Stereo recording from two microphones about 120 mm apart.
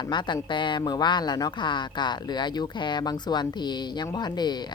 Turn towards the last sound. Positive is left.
turn(degrees=35)  # may be behind; listen again after turning